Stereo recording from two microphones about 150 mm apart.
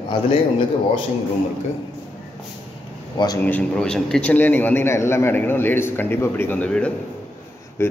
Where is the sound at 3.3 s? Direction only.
10° left (ahead or behind).